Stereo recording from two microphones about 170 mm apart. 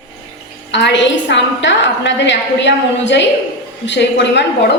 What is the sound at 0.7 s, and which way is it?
A woman's voice, 90° left.